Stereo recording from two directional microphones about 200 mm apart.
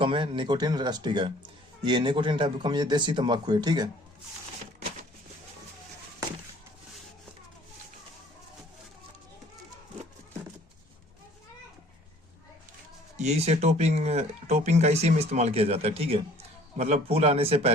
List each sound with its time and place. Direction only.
0.0 s a man's voice: 25° right (ahead or behind)
13.1 s speech: 35° right (ahead or behind)